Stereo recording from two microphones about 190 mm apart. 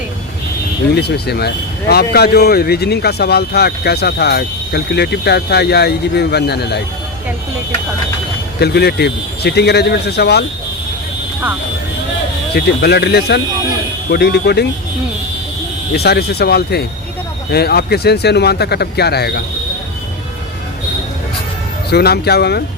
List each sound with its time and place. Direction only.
0.9 s speech: 60° left (ahead or behind)
8.5 s speech: 60° left (ahead or behind)
12.5 s speech: 60° left (ahead or behind)
15.9 s speech: 60° left (ahead or behind)
21.8 s speech: 55° left (ahead or behind)